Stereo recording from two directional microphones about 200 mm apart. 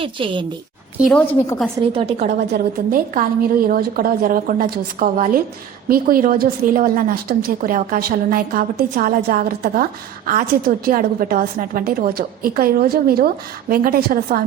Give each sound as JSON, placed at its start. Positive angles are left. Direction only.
{"t": 0.0, "sound": "a woman's voice", "side_deg": -25}
{"t": 0.9, "sound": "a woman's voice", "side_deg": 0}
{"t": 1.9, "sound": "a woman's voice", "side_deg": -30}
{"t": 2.5, "sound": "a woman's voice", "side_deg": -45}